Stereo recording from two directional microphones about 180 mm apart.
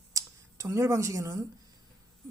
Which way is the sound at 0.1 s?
15° right (ahead or behind).